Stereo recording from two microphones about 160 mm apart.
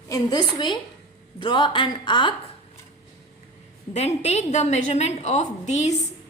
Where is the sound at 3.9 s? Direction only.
40° left (ahead or behind).